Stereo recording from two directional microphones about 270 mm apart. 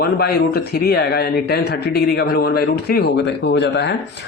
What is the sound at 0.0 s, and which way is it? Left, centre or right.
Speech, left.